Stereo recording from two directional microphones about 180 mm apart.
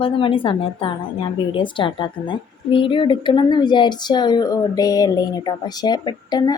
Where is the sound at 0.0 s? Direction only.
30° left (ahead or behind).